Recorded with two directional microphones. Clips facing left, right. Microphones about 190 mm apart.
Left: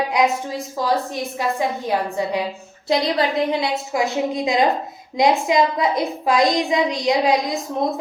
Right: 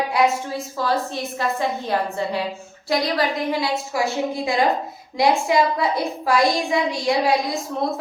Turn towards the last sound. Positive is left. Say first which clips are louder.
# left 2 dB
turn(degrees=20)  # may be behind; listen again after turning